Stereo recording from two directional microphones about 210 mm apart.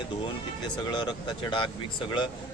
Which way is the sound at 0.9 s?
20° left (ahead or behind).